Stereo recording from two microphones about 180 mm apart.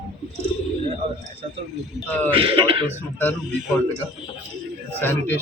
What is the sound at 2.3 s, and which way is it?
Speech, 30° right (ahead or behind).